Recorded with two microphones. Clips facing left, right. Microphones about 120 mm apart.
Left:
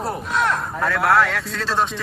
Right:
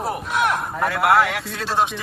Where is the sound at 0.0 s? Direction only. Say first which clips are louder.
Even; centre (ahead or behind).